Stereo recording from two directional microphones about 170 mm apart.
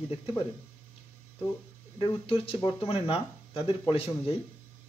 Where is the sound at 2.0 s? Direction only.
30° left (ahead or behind).